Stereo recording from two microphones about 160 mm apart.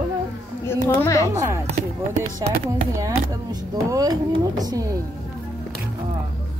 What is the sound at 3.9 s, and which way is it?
Speech, 20° right (ahead or behind).